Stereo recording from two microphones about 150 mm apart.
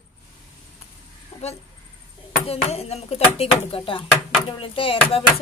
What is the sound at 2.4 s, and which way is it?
Speech, 45° left (ahead or behind).